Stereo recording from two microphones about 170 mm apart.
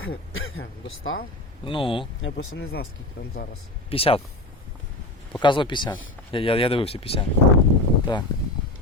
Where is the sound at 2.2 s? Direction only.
90° left.